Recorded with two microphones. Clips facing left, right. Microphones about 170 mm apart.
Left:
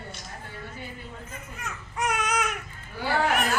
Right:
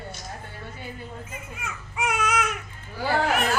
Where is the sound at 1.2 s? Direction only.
5° right (ahead or behind).